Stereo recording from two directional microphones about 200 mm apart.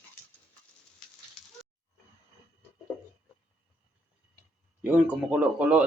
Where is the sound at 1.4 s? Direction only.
5° left (ahead or behind).